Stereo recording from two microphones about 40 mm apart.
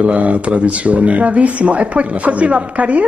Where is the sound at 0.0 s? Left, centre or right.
Right.